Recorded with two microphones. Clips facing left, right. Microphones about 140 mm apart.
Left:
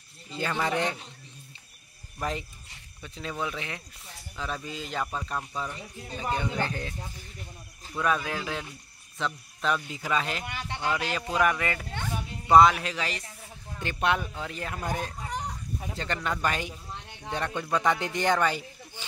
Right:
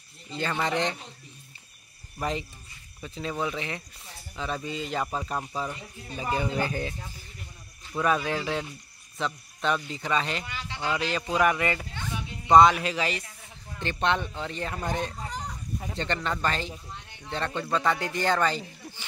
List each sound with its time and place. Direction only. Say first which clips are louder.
0.3 s speech: even; centre (ahead or behind)
2.1 s speech: right 2 dB; centre (ahead or behind)
5.0 s speech: right 2 dB; 10° right (ahead or behind)
8.0 s speech: right 2 dB; centre (ahead or behind)
10.4 s speech: left 2 dB; 55° left (ahead or behind)
10.9 s speech: right 2 dB; centre (ahead or behind)